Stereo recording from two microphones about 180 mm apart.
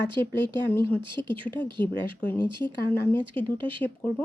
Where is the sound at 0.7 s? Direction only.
10° left (ahead or behind).